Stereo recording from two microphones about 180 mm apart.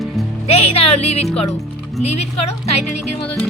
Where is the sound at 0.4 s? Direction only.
35° left (ahead or behind).